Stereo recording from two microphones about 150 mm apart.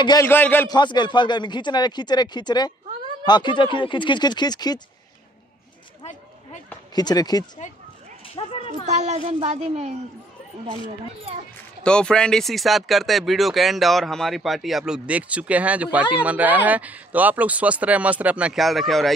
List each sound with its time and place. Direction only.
0.0 s speech: 25° left (ahead or behind)
0.3 s a man's voice: 15° left (ahead or behind)
0.7 s speech: 30° left (ahead or behind)
7.0 s speech: 25° left (ahead or behind)
8.4 s speech: 40° left (ahead or behind)
8.6 s a child's voice: 50° right (ahead or behind)
11.8 s speech: 5° left (ahead or behind)